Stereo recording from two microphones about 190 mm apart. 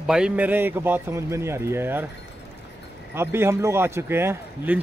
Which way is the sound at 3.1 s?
15° right (ahead or behind).